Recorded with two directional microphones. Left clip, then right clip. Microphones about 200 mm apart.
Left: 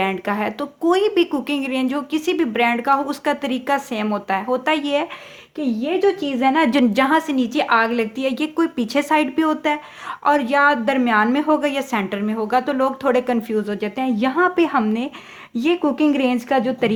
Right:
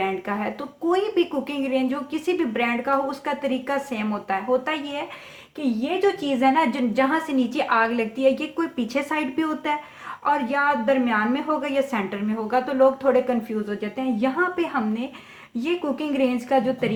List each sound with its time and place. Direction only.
0.0 s speech: 45° left (ahead or behind)
5.5 s a woman's voice: 35° left (ahead or behind)